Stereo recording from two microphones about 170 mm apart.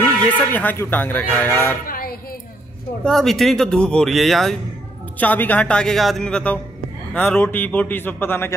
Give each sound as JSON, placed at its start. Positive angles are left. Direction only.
{"t": 0.0, "sound": "speech", "side_deg": 10}
{"t": 1.9, "sound": "a sound", "side_deg": 60}
{"t": 3.0, "sound": "speech", "side_deg": 0}